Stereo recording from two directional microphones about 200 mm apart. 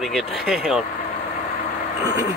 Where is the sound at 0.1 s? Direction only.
Centre (ahead or behind).